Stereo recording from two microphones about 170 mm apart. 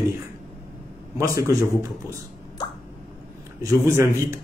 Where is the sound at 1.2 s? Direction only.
20° right (ahead or behind).